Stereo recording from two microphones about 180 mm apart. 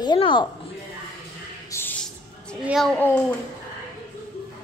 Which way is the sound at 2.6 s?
Centre (ahead or behind).